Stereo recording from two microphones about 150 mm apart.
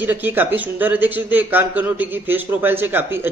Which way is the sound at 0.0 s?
10° right (ahead or behind).